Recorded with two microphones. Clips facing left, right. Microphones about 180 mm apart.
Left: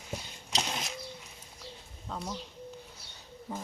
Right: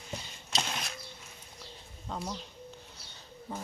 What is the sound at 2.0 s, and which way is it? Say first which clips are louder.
Speech: even; 5° right (ahead or behind).